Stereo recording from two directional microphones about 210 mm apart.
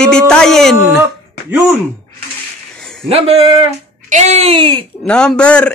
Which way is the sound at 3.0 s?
30° right (ahead or behind).